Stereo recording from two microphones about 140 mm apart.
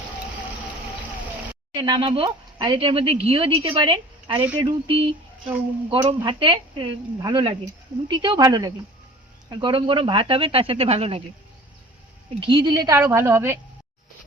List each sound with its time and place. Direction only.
1.7 s a woman's voice: 30° right (ahead or behind)
12.3 s a woman's voice: 35° right (ahead or behind); by 13.6 s 15° right (ahead or behind)